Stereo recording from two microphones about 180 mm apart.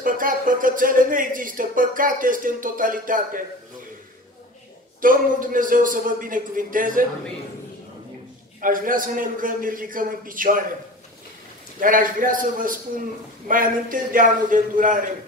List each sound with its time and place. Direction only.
0.0 s speech: 50° right (ahead or behind)
5.0 s speech: 50° right (ahead or behind)
8.5 s speech: 50° right (ahead or behind)
11.8 s speech: 50° right (ahead or behind)